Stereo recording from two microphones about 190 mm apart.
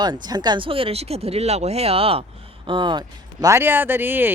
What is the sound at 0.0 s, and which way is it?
Speech, 20° right (ahead or behind).